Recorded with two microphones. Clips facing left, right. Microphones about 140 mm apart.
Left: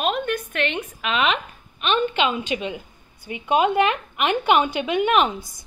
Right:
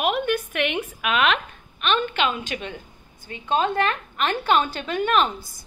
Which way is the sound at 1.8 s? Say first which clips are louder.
Left 2 dB; 20° left (ahead or behind).